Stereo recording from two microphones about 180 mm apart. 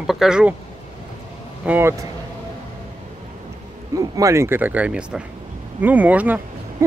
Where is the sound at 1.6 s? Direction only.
10° right (ahead or behind).